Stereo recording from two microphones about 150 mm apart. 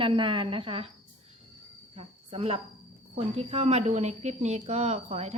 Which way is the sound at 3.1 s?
45° right (ahead or behind).